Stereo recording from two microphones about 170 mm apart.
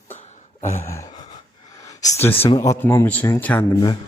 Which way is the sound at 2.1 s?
15° left (ahead or behind).